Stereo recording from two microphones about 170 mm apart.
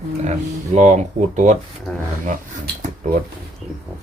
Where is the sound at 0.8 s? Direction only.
45° right (ahead or behind).